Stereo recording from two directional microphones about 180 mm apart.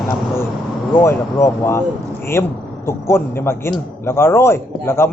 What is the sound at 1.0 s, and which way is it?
Speech, 15° left (ahead or behind).